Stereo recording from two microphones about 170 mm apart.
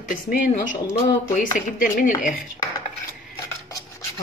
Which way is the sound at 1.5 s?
50° left (ahead or behind).